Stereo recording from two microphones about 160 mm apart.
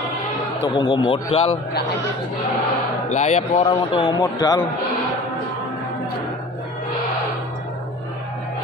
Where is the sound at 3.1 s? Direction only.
45° left (ahead or behind); by 4.6 s 20° left (ahead or behind).